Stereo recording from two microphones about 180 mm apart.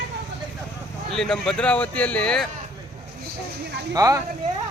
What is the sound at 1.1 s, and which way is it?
A man's voice, centre (ahead or behind).